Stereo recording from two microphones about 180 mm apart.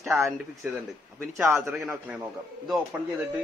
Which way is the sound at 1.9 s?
5° right (ahead or behind).